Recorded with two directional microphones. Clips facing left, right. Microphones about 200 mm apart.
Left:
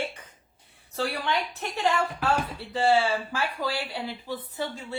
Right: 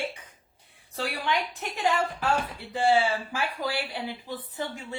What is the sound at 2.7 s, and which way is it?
A woman's voice, 15° right (ahead or behind).